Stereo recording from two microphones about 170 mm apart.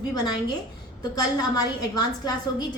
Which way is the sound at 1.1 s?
25° left (ahead or behind).